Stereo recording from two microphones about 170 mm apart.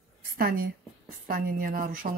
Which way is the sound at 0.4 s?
60° right (ahead or behind).